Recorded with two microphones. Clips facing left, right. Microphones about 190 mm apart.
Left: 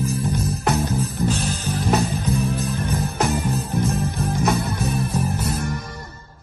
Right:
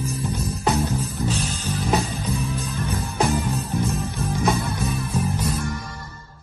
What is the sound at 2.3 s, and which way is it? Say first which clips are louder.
Music: left 4 dB; 55° left (ahead or behind).